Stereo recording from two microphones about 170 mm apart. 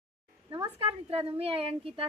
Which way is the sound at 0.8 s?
35° right (ahead or behind).